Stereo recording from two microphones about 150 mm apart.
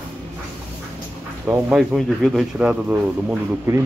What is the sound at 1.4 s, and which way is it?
Speech, 15° right (ahead or behind).